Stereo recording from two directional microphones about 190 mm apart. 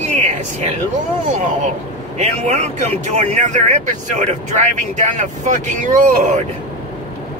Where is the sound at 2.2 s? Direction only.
40° right (ahead or behind).